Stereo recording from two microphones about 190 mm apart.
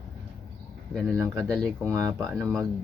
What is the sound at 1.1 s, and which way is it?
Speech, 15° right (ahead or behind).